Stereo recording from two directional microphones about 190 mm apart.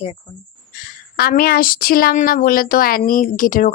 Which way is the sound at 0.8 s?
50° left (ahead or behind).